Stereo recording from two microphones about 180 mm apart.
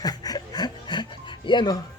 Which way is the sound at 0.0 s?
20° left (ahead or behind).